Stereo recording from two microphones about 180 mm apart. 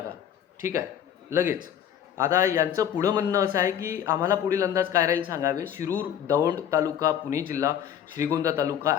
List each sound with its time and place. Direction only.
0.6 s a man's voice: 15° right (ahead or behind)
2.1 s a man's voice: 15° right (ahead or behind)